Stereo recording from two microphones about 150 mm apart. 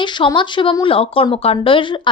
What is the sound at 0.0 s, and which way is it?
A woman's voice, 30° left (ahead or behind).